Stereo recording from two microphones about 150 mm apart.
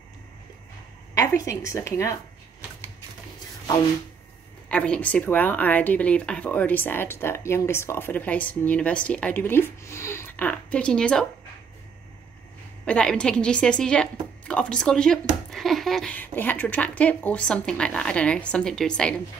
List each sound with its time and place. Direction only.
1.1 s a woman's voice: 20° left (ahead or behind)
4.6 s speech: 5° left (ahead or behind)
12.8 s speech: 5° left (ahead or behind)